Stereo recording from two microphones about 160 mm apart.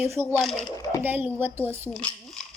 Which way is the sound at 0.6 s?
20° left (ahead or behind).